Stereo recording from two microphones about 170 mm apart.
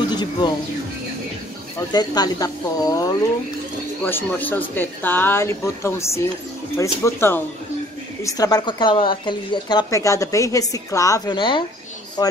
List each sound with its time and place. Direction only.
0.1 s speech: 25° left (ahead or behind)
1.9 s speech: 25° left (ahead or behind)